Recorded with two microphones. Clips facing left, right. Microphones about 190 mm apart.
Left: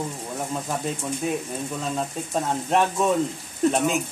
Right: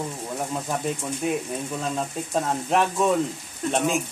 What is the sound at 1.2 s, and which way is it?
Speech, centre (ahead or behind).